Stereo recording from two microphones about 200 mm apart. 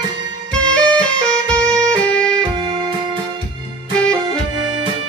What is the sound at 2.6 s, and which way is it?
Music, 25° right (ahead or behind).